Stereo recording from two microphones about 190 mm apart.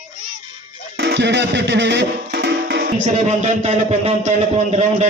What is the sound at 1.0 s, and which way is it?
Music, 60° right (ahead or behind).